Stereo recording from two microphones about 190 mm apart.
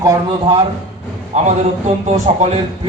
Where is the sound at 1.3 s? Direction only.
40° right (ahead or behind).